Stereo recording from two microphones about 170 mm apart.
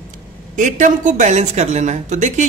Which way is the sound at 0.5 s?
50° right (ahead or behind).